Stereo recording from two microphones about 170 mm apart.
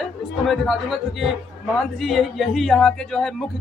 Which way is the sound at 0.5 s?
Centre (ahead or behind).